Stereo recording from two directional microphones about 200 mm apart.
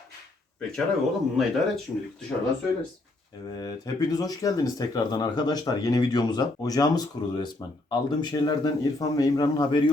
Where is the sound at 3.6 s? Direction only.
20° left (ahead or behind).